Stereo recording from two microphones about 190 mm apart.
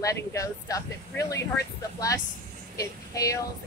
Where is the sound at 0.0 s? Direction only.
15° left (ahead or behind).